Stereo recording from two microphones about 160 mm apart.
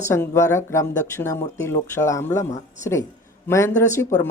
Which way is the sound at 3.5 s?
15° left (ahead or behind).